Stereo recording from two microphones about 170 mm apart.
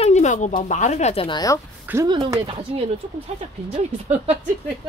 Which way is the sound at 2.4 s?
30° right (ahead or behind).